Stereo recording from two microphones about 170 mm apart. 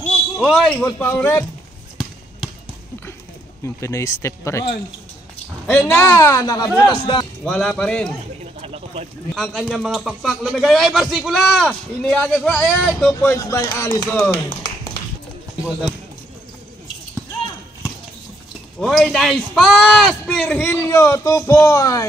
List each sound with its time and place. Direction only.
0.4 s a man's voice: centre (ahead or behind)
3.6 s a man's voice: 15° left (ahead or behind)
5.7 s a man's voice: 10° left (ahead or behind)
7.4 s a man's voice: 5° left (ahead or behind)
8.5 s a sound: 35° right (ahead or behind)
9.3 s a man's voice: centre (ahead or behind)
13.1 s a man's voice: 20° left (ahead or behind)
18.8 s a man's voice: centre (ahead or behind); by 22.0 s 20° left (ahead or behind)